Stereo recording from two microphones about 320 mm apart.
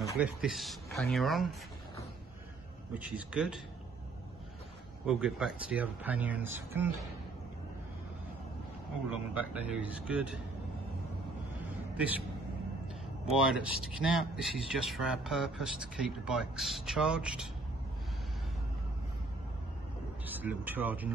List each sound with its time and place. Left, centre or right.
0.2 s speech: centre
2.9 s speech: centre
5.0 s speech: centre
9.1 s speech: centre
13.3 s speech: centre
20.2 s speech: centre